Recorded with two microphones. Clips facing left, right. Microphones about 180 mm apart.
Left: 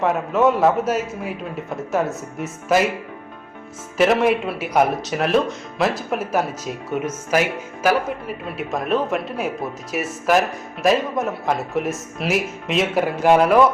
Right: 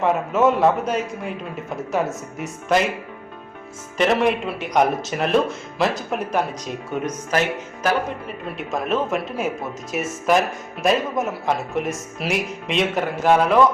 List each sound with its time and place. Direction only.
0.0 s speech: centre (ahead or behind)
3.9 s speech: 5° left (ahead or behind)